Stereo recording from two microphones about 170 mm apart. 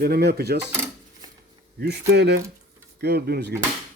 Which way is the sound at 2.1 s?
80° right.